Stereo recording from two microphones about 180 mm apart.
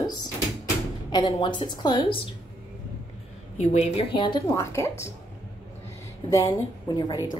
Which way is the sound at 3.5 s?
35° left (ahead or behind).